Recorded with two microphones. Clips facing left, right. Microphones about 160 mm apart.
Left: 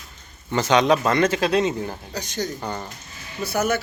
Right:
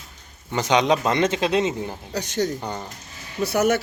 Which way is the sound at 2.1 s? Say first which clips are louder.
Right 5 dB; 65° right (ahead or behind).